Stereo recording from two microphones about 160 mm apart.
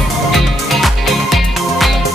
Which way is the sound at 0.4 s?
Centre (ahead or behind).